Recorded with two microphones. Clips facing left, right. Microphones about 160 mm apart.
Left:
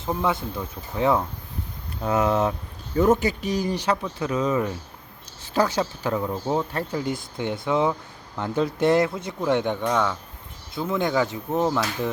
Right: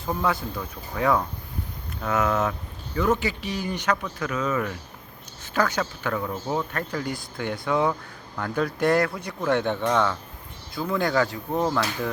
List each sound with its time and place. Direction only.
0.0 s speech: 20° left (ahead or behind)
10.8 s speech: 20° left (ahead or behind)